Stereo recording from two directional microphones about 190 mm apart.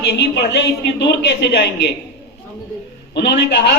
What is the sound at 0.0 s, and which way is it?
A man's voice, 60° left (ahead or behind).